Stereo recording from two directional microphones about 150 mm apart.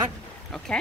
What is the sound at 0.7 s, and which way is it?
Speech, 5° left (ahead or behind).